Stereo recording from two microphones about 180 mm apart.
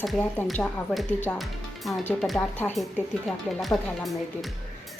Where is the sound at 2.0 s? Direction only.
10° left (ahead or behind).